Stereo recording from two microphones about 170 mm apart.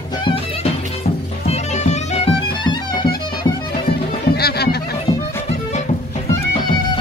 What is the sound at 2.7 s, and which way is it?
Music, 25° left (ahead or behind).